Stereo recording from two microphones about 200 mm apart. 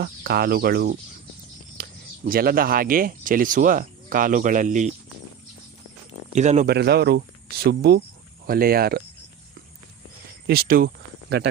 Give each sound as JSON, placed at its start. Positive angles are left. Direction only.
{"t": 0.0, "sound": "speech", "side_deg": -50}
{"t": 6.3, "sound": "speech", "side_deg": -35}
{"t": 6.7, "sound": "speech", "side_deg": -55}
{"t": 10.4, "sound": "speech", "side_deg": -50}